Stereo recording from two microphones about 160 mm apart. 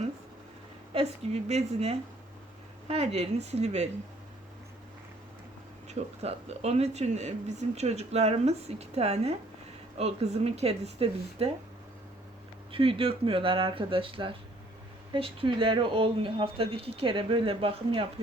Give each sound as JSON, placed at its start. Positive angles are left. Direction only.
{"t": 0.9, "sound": "speech", "side_deg": -40}
{"t": 5.9, "sound": "speech", "side_deg": -45}
{"t": 12.7, "sound": "speech", "side_deg": -35}